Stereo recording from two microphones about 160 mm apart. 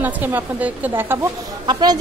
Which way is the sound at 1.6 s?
25° right (ahead or behind).